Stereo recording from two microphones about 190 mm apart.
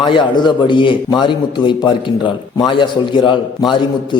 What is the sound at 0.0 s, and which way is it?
A man's voice, 25° left (ahead or behind).